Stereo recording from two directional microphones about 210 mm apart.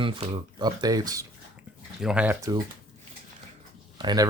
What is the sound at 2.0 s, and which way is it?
Speech, 5° right (ahead or behind).